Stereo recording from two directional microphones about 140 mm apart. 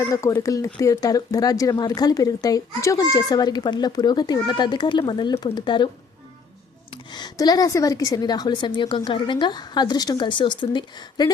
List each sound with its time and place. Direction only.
0.1 s a woman's voice: 25° left (ahead or behind)
6.9 s a woman's voice: 30° left (ahead or behind)